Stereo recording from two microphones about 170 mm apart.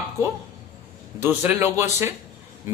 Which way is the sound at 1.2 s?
10° right (ahead or behind).